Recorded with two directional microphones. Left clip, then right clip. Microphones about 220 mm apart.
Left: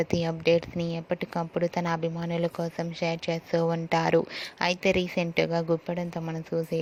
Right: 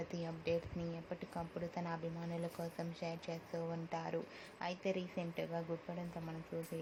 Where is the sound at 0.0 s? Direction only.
40° left (ahead or behind).